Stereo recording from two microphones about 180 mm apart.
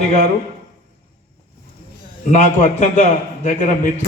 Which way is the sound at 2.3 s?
40° left (ahead or behind).